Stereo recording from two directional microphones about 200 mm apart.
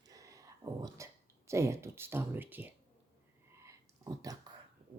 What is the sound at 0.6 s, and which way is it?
Speech, 15° right (ahead or behind).